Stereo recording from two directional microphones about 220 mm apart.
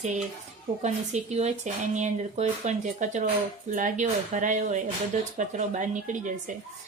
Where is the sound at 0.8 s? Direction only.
30° right (ahead or behind).